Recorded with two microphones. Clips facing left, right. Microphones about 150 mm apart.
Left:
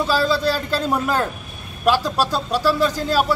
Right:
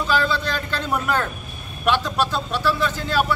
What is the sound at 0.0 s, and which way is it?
Speech, 35° left (ahead or behind).